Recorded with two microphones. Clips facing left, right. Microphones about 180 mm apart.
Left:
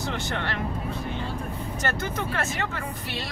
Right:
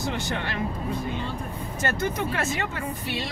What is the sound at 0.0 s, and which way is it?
Speech, 15° right (ahead or behind).